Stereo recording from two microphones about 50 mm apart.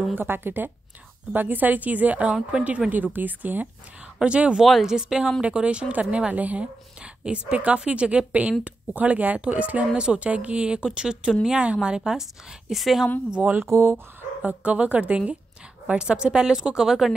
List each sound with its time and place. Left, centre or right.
0.1 s a woman's voice: right
2.9 s a woman's voice: right
4.2 s a woman's voice: right
6.3 s a woman's voice: right; by 13.1 s centre
13.7 s speech: right
14.4 s a woman's voice: right; by 17.1 s centre